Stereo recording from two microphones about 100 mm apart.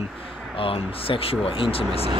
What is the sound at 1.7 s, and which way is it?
Speech, 80° left.